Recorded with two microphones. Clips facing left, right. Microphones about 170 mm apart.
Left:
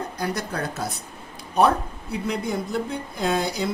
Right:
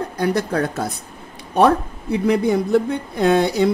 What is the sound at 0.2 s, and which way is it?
Speech, 60° right (ahead or behind).